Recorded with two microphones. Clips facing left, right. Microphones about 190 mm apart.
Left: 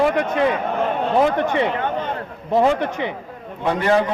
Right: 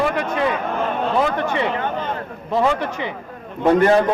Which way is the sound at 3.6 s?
50° right (ahead or behind).